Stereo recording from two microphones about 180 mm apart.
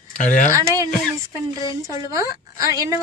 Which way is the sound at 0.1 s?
45° left (ahead or behind).